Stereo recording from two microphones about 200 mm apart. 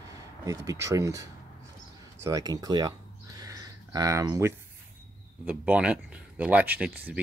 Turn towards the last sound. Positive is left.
turn(degrees=-10)  # may be behind; listen again after turning